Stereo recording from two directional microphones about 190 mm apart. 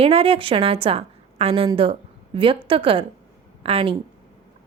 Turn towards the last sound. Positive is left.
turn(degrees=-30)  # may be behind; listen again after turning